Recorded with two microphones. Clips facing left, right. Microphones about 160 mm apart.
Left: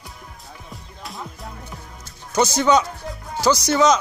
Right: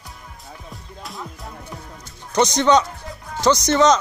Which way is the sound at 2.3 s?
5° left (ahead or behind).